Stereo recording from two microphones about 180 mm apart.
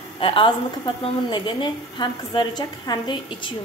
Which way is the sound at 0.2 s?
30° left (ahead or behind).